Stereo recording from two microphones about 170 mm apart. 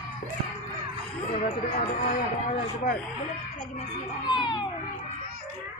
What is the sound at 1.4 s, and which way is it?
Speech, 50° left (ahead or behind).